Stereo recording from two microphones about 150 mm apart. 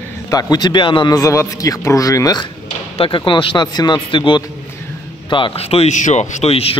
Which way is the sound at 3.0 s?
35° left (ahead or behind).